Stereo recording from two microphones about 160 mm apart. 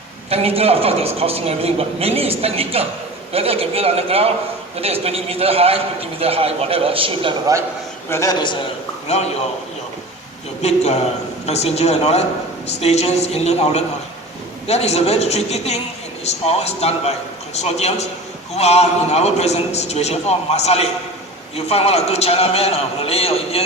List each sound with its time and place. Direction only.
0.3 s a man's voice: 40° right (ahead or behind)
8.1 s a man's voice: 20° left (ahead or behind)
9.0 s a man's voice: 40° left (ahead or behind)
10.6 s a man's voice: 45° left (ahead or behind)